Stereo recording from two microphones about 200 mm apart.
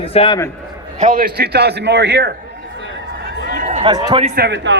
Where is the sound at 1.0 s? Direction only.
45° right (ahead or behind).